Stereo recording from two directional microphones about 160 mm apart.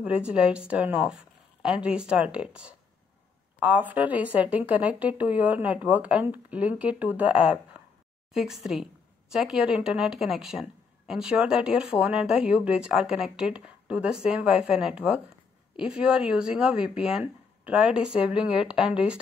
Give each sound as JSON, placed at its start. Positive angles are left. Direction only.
{"t": 0.0, "sound": "a woman's voice", "side_deg": -5}